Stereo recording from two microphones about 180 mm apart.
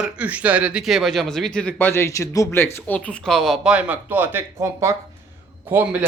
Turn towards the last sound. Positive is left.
turn(degrees=-10)  # may be behind; listen again after turning